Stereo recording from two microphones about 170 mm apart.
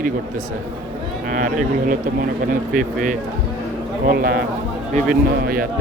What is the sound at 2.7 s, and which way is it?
Speech, 55° right (ahead or behind).